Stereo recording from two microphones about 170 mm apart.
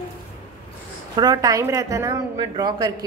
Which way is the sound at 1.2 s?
25° right (ahead or behind).